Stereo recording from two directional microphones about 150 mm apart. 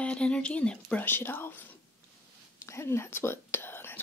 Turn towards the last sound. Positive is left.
turn(degrees=15)  # may be behind; listen again after turning